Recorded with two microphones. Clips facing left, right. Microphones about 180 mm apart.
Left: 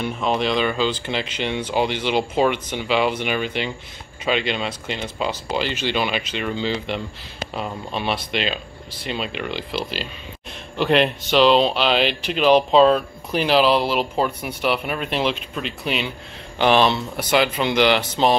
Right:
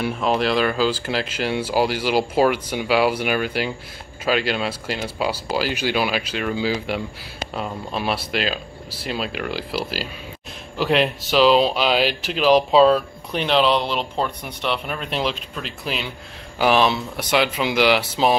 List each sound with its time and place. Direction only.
0.1 s speech: 5° right (ahead or behind)